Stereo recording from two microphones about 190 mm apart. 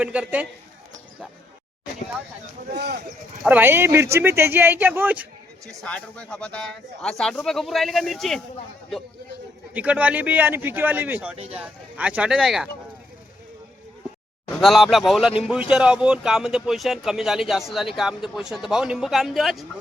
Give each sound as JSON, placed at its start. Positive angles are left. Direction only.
{"t": 0.0, "sound": "speech", "side_deg": -5}
{"t": 2.7, "sound": "speech", "side_deg": -60}
{"t": 3.5, "sound": "speech", "side_deg": -10}
{"t": 5.6, "sound": "speech", "side_deg": 5}
{"t": 9.7, "sound": "speech", "side_deg": -5}
{"t": 14.5, "sound": "speech", "side_deg": 0}